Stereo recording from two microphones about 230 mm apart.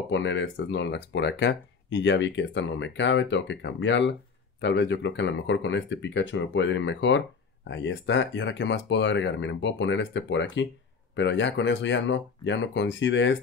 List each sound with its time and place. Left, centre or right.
0.1 s speech: left